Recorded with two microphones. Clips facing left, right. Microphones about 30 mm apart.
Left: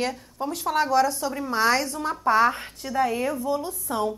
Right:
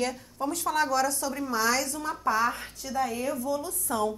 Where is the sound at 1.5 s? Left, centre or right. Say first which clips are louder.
Left 5 dB; left.